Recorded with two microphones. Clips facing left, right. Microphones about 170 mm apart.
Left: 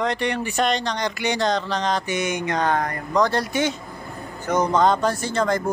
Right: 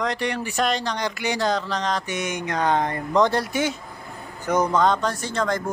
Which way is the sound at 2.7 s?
25° right (ahead or behind).